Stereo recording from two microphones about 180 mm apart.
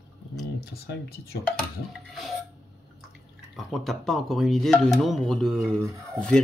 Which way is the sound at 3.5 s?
Centre (ahead or behind).